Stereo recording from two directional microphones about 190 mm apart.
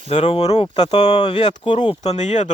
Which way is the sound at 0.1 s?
35° left (ahead or behind).